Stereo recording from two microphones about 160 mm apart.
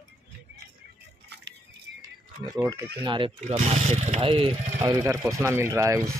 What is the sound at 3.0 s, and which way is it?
Speech, 30° right (ahead or behind).